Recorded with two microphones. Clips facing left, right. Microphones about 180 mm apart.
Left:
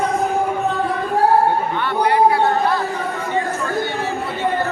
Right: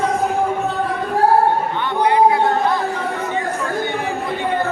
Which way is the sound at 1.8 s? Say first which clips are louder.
Right 1 dB; 20° right (ahead or behind).